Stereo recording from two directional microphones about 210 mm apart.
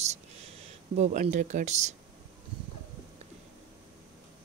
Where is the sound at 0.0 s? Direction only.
30° right (ahead or behind).